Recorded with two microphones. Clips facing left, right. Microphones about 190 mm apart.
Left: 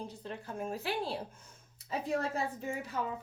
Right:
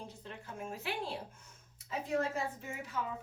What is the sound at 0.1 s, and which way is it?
A woman's voice, 35° left (ahead or behind).